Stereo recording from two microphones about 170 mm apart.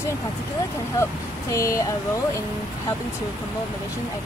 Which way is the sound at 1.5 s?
20° left (ahead or behind).